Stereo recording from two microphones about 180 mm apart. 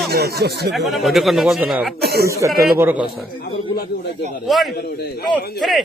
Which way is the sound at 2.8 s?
10° right (ahead or behind).